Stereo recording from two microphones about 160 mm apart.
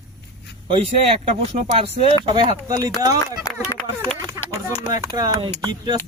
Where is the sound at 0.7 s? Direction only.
35° right (ahead or behind).